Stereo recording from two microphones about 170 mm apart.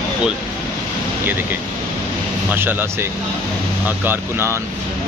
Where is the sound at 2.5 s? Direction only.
10° right (ahead or behind).